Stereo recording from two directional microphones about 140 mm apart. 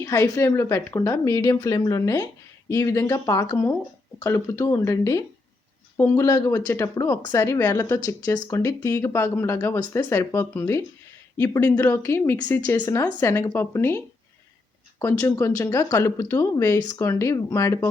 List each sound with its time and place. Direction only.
0.0 s speech: 25° left (ahead or behind)
15.2 s speech: 20° left (ahead or behind)